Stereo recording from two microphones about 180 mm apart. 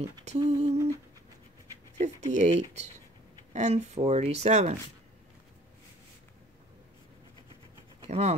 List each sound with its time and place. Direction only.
0.2 s speech: 40° right (ahead or behind)
2.0 s speech: 40° right (ahead or behind)
8.0 s speech: 35° right (ahead or behind)